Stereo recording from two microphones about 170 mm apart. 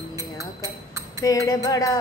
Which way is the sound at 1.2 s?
20° left (ahead or behind).